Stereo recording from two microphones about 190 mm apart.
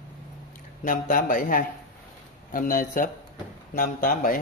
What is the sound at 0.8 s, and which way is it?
Speech, 45° left (ahead or behind).